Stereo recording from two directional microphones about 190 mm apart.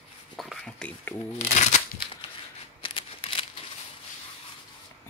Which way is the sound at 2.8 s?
30° left (ahead or behind).